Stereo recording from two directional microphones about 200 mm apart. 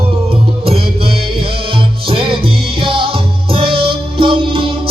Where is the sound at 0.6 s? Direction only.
30° right (ahead or behind).